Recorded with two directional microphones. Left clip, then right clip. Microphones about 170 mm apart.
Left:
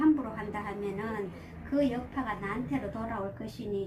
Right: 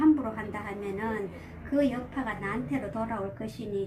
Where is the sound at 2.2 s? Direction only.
5° right (ahead or behind).